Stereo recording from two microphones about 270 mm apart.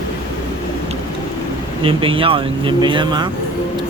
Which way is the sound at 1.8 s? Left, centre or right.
Centre.